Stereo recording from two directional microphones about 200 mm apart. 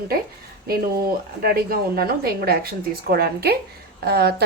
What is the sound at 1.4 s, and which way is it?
A woman's voice, 50° right (ahead or behind).